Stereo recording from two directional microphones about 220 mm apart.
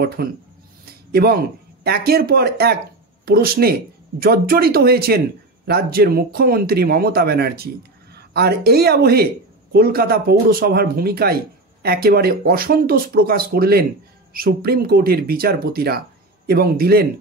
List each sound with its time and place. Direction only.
0.2 s speech: 45° right (ahead or behind)